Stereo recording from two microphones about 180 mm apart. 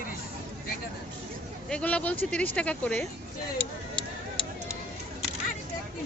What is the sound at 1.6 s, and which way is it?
Speech, 5° left (ahead or behind).